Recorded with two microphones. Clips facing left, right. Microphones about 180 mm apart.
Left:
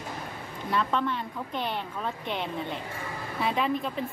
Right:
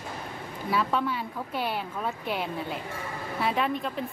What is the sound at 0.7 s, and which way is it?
Speech, 5° right (ahead or behind).